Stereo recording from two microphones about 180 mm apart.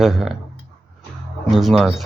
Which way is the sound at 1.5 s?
Centre (ahead or behind).